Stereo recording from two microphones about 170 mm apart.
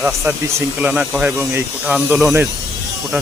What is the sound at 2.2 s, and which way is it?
Speech, 15° right (ahead or behind).